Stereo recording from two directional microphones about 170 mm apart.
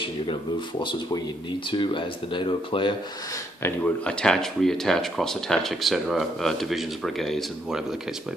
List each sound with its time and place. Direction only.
0.0 s speech: 30° left (ahead or behind)
3.6 s speech: 10° left (ahead or behind)